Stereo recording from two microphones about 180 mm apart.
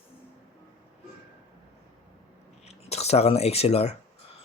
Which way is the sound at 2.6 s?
35° left (ahead or behind).